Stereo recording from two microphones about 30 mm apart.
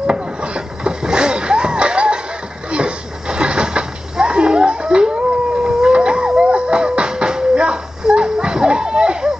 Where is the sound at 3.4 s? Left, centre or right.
Right.